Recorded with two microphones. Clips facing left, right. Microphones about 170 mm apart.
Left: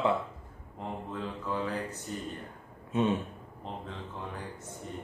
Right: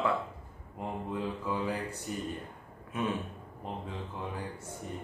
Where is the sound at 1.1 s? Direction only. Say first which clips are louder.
Right 1 dB; 10° right (ahead or behind).